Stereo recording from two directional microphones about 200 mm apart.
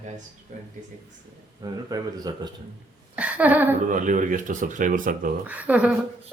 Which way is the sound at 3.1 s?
5° right (ahead or behind).